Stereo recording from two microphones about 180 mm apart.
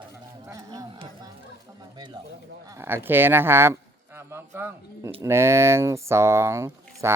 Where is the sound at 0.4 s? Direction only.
20° right (ahead or behind).